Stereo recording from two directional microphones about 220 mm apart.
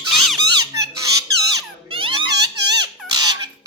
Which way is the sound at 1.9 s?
25° right (ahead or behind).